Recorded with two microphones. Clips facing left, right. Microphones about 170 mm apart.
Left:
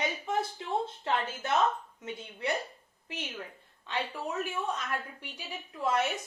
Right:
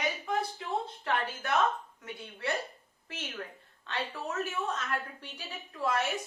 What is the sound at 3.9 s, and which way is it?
A woman's voice, 10° left (ahead or behind).